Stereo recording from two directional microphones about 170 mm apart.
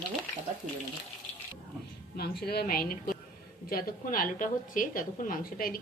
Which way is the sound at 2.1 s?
70° left (ahead or behind).